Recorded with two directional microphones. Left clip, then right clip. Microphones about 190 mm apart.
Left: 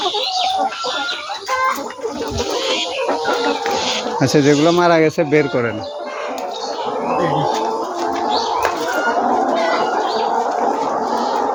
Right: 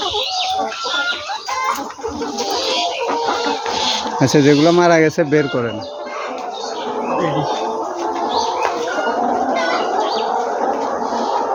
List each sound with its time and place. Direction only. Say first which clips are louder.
4.2 s speech: right 1 dB; 25° right (ahead or behind)